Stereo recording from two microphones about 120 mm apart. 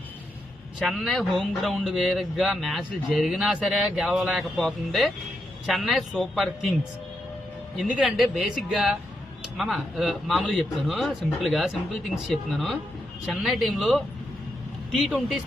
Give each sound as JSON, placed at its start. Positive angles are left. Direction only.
{"t": 0.8, "sound": "speech", "side_deg": 0}
{"t": 7.9, "sound": "speech", "side_deg": -5}